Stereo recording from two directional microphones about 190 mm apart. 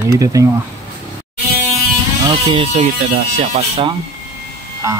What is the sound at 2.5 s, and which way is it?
Speech, 35° right (ahead or behind).